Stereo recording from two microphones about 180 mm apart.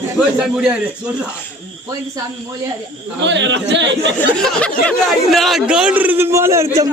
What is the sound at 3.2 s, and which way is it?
Speech, 85° right.